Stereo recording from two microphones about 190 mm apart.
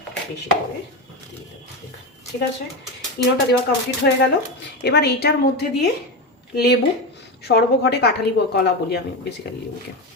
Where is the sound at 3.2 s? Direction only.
55° left (ahead or behind).